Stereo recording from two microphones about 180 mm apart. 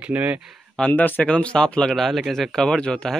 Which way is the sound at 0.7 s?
5° left (ahead or behind).